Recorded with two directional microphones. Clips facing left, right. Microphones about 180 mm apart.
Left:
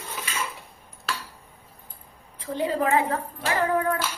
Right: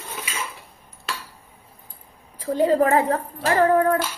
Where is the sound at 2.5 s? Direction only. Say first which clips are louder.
Right 6 dB; 45° right (ahead or behind).